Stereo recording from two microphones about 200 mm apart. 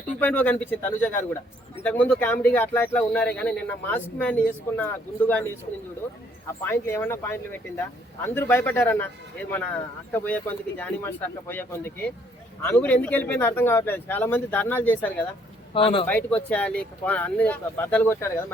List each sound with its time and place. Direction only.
0.2 s speech: 5° left (ahead or behind)
6.6 s speech: 10° left (ahead or behind)
15.7 s speech: 25° left (ahead or behind)
16.0 s speech: 10° left (ahead or behind)